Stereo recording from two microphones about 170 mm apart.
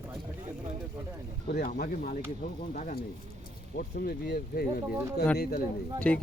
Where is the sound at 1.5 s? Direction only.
60° left (ahead or behind).